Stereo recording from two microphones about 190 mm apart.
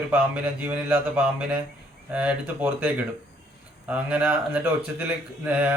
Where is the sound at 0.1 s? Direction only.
10° right (ahead or behind).